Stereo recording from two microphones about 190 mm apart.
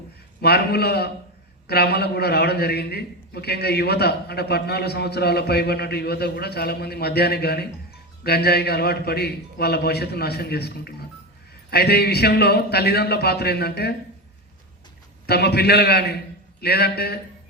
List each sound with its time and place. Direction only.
0.4 s a man's voice: 55° left (ahead or behind)
15.3 s a man's voice: 60° left (ahead or behind)